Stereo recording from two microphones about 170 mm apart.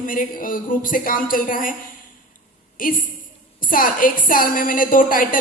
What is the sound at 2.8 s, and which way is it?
A woman's voice, 55° left (ahead or behind).